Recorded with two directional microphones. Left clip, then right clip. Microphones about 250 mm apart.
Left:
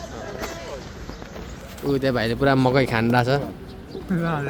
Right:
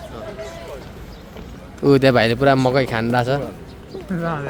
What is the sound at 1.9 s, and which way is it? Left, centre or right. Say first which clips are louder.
Speech: right 8 dB; right.